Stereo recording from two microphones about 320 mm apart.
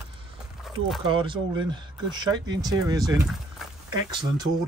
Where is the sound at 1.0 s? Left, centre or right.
Centre.